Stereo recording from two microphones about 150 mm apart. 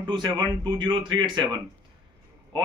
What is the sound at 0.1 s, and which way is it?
A man's voice, 30° right (ahead or behind).